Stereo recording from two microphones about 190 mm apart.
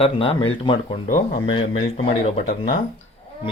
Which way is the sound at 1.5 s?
25° left (ahead or behind).